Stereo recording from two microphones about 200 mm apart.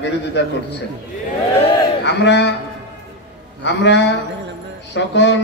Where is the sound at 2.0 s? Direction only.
60° left (ahead or behind).